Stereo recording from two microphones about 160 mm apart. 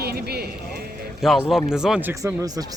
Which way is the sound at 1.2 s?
Centre (ahead or behind).